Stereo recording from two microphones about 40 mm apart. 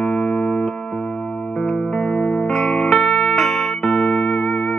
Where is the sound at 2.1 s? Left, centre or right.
Left.